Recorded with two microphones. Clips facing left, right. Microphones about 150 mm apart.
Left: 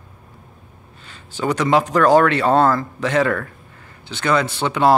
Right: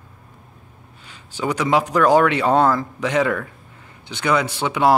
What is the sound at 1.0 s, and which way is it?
Speech, 10° right (ahead or behind).